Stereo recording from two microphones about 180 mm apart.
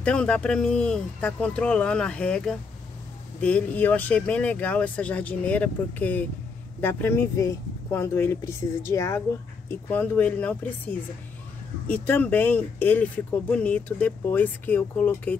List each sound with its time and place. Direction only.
0.0 s speech: 5° left (ahead or behind)